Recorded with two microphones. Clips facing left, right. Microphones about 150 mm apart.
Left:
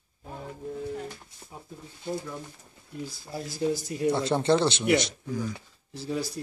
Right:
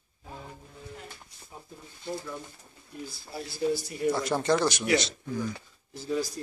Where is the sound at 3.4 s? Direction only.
45° left (ahead or behind).